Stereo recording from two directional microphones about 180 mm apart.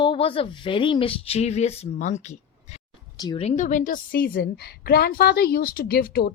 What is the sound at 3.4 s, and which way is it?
A woman's voice, 40° left (ahead or behind).